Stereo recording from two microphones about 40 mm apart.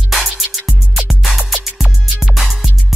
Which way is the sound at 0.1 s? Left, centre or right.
Centre.